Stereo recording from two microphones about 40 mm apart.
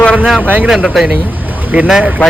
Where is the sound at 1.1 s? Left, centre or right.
Right.